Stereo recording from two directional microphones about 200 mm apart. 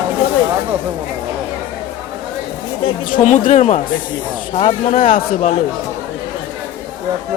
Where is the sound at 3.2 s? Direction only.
35° left (ahead or behind).